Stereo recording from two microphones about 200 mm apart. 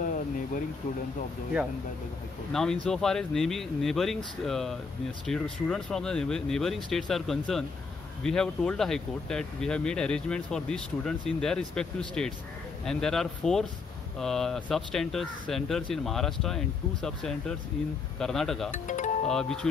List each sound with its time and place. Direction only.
2.5 s speech: 5° left (ahead or behind)
18.7 s speech: 40° left (ahead or behind)
19.2 s speech: 5° left (ahead or behind)